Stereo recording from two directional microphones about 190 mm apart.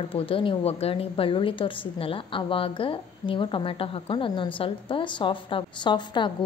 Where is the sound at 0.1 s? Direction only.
25° left (ahead or behind).